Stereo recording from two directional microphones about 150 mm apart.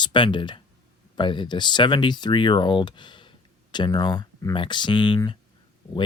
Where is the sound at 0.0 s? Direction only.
30° left (ahead or behind).